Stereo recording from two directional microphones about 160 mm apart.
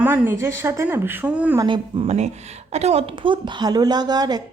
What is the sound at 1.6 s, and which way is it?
Speech, 35° right (ahead or behind).